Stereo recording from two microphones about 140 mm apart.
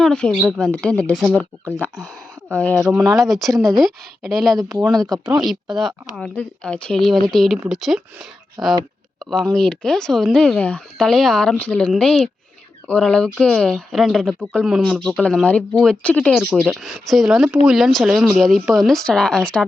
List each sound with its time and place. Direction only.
0.0 s speech: 5° left (ahead or behind)
2.5 s speech: 10° left (ahead or behind)
5.2 s speech: 30° right (ahead or behind)
5.5 s speech: centre (ahead or behind)
8.6 s speech: 30° right (ahead or behind)
9.3 s speech: 5° left (ahead or behind)